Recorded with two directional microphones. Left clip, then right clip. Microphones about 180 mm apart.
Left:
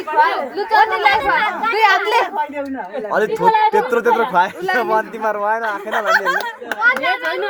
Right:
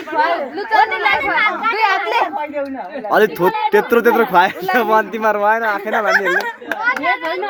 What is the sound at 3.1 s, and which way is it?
Speech, 25° right (ahead or behind).